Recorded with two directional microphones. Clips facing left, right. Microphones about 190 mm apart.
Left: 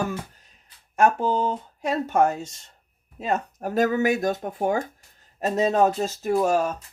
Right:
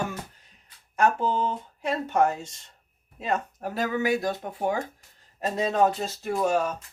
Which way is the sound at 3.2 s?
40° left (ahead or behind).